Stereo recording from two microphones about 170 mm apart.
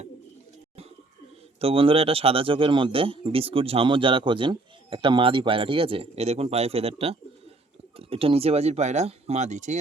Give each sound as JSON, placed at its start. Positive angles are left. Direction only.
{"t": 1.6, "sound": "speech", "side_deg": -30}